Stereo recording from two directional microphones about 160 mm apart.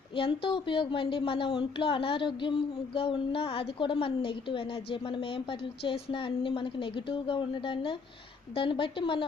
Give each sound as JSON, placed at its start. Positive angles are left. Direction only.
{"t": 0.1, "sound": "a woman's voice", "side_deg": 30}
{"t": 5.9, "sound": "a woman's voice", "side_deg": 30}